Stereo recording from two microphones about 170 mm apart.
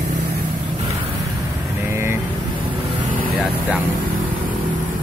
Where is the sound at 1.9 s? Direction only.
15° right (ahead or behind).